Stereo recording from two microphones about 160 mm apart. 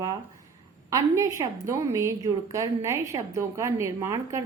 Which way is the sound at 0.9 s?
20° right (ahead or behind).